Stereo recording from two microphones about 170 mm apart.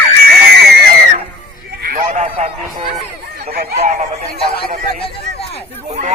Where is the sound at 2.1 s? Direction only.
40° right (ahead or behind).